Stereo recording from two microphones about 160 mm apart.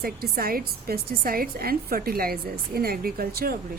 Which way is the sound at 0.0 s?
70° right (ahead or behind).